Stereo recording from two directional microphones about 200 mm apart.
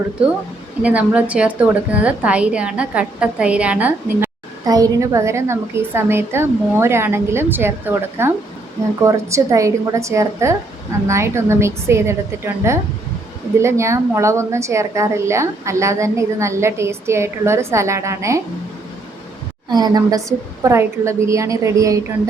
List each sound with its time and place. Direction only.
0.8 s a woman's voice: 5° right (ahead or behind)
19.7 s a woman's voice: 20° right (ahead or behind)